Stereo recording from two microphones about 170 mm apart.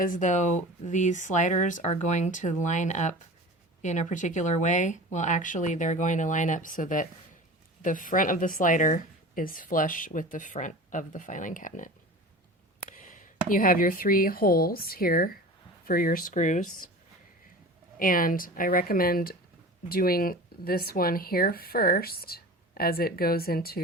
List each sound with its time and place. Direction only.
0.0 s speech: 50° left (ahead or behind)
13.0 s speech: 50° left (ahead or behind)
18.0 s speech: 55° left (ahead or behind)